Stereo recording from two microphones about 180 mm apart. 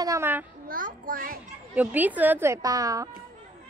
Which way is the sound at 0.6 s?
50° right (ahead or behind).